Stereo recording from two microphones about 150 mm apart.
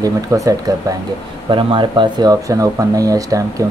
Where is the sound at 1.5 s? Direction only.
35° right (ahead or behind).